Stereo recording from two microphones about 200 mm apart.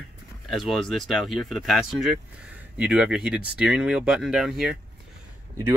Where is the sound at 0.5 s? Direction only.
Centre (ahead or behind).